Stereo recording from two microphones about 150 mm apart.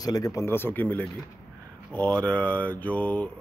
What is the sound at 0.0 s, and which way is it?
Speech, 25° left (ahead or behind).